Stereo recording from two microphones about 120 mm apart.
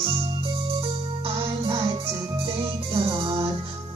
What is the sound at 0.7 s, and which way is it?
Music, 50° right (ahead or behind).